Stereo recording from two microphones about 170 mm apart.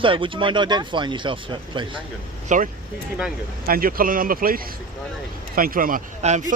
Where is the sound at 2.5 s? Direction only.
45° right (ahead or behind).